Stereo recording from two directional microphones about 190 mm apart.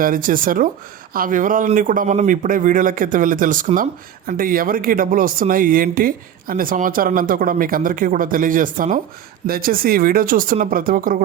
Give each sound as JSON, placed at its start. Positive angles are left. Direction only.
{"t": 0.0, "sound": "speech", "side_deg": -45}